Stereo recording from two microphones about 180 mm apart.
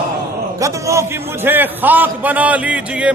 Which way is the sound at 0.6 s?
15° right (ahead or behind).